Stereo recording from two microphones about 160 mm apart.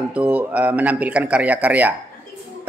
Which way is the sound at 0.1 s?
10° right (ahead or behind).